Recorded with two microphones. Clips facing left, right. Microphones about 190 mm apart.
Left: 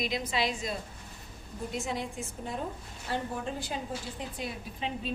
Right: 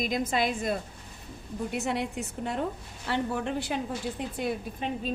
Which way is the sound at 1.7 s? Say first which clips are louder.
Right 4 dB; 65° right (ahead or behind).